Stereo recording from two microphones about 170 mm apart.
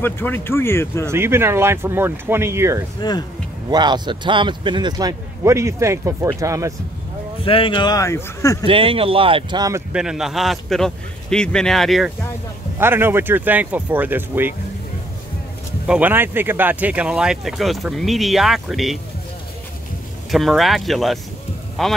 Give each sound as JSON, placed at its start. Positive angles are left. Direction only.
{"t": 0.0, "sound": "speech", "side_deg": 10}
{"t": 1.0, "sound": "speech", "side_deg": -15}
{"t": 3.0, "sound": "speech", "side_deg": 25}
{"t": 3.7, "sound": "speech", "side_deg": -25}
{"t": 7.4, "sound": "speech", "side_deg": 30}
{"t": 8.6, "sound": "speech", "side_deg": -30}
{"t": 9.9, "sound": "speech", "side_deg": -5}
{"t": 12.7, "sound": "speech", "side_deg": -15}
{"t": 15.9, "sound": "speech", "side_deg": -10}
{"t": 20.2, "sound": "speech", "side_deg": 0}